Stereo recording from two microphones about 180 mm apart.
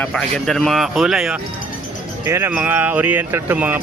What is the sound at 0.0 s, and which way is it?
Speech, 5° left (ahead or behind).